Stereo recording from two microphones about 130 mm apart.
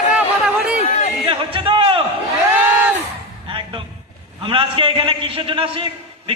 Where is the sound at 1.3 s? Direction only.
40° right (ahead or behind).